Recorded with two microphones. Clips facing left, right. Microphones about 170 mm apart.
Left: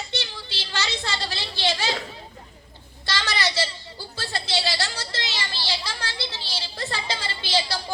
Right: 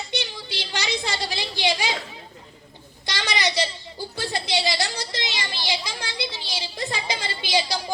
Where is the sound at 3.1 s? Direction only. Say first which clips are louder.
Right 1 dB; 15° right (ahead or behind).